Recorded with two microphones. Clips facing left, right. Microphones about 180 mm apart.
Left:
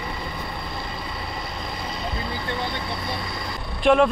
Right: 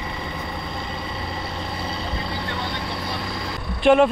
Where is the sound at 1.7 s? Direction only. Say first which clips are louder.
Right 2 dB; 30° right (ahead or behind).